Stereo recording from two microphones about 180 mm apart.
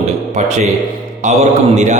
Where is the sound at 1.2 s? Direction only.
40° right (ahead or behind).